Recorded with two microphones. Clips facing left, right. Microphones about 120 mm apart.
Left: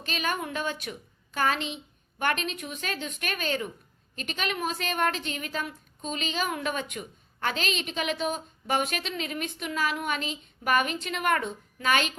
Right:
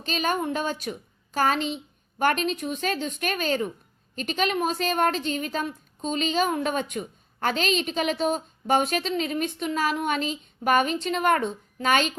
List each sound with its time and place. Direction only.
0.0 s a woman's voice: 35° right (ahead or behind)